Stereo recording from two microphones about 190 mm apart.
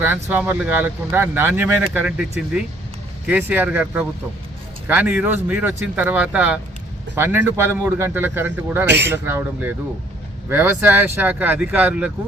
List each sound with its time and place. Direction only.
0.0 s speech: 10° right (ahead or behind)
8.9 s a man's voice: 65° right (ahead or behind)
9.1 s speech: 10° right (ahead or behind)